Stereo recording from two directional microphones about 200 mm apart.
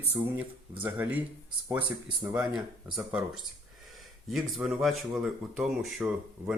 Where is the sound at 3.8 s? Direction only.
Centre (ahead or behind).